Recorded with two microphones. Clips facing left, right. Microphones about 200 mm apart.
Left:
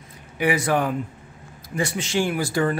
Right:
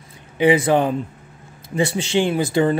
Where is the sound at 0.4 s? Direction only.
25° right (ahead or behind).